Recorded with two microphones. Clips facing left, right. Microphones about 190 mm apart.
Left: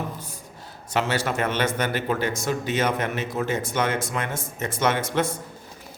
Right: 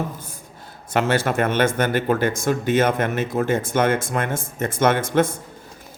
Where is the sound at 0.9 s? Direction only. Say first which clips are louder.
Right 5 dB; 50° right (ahead or behind).